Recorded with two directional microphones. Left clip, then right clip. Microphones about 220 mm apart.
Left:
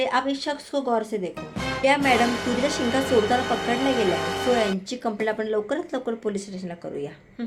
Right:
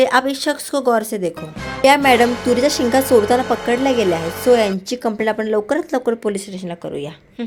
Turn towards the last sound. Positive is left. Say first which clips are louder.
# right 7 dB
turn(degrees=-40)  # may be behind; listen again after turning